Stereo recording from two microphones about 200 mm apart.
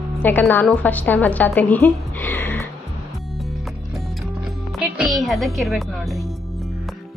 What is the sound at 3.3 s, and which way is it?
Music, centre (ahead or behind).